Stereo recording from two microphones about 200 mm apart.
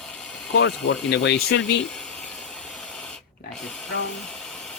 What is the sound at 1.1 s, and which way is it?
Speech, 60° left (ahead or behind).